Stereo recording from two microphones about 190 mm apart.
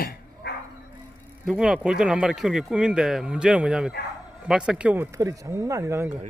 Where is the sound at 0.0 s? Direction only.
55° left (ahead or behind).